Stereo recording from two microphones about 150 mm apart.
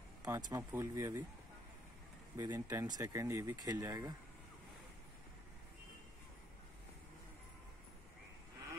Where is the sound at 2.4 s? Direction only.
25° right (ahead or behind).